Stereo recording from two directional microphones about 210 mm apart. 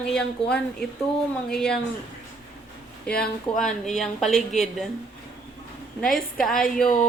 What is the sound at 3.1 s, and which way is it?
A woman's voice, 5° left (ahead or behind).